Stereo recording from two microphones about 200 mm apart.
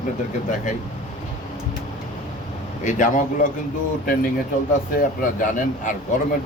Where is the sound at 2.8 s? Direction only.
40° left (ahead or behind).